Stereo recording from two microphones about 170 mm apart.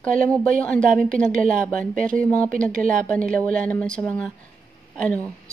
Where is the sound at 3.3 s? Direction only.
5° left (ahead or behind).